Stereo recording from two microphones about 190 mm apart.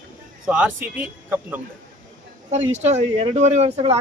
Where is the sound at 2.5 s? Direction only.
35° right (ahead or behind).